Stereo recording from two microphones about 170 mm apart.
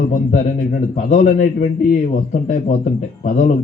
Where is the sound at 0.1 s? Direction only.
45° left (ahead or behind).